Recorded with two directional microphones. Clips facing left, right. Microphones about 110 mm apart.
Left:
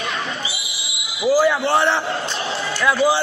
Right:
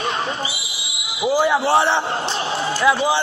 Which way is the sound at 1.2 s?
20° right (ahead or behind).